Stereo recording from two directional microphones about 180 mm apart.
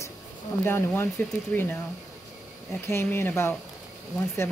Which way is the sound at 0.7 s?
15° left (ahead or behind).